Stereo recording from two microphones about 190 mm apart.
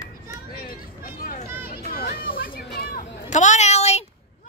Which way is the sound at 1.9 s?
50° left (ahead or behind).